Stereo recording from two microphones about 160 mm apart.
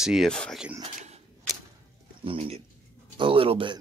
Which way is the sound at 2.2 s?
35° right (ahead or behind).